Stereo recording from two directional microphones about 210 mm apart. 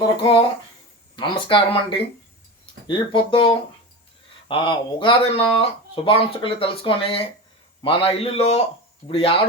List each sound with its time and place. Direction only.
0.2 s speech: 25° left (ahead or behind)